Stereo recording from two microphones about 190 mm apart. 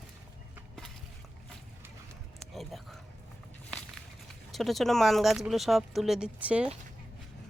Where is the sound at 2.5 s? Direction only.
Centre (ahead or behind).